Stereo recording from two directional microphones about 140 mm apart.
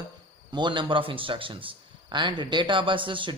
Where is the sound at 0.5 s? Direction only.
35° right (ahead or behind).